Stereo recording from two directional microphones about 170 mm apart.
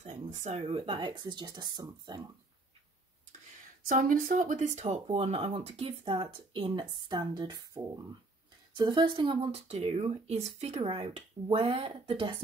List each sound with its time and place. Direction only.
0.0 s a sound: 40° right (ahead or behind)
0.7 s speech: 30° right (ahead or behind)
3.8 s speech: 50° right (ahead or behind); by 12.4 s 30° right (ahead or behind)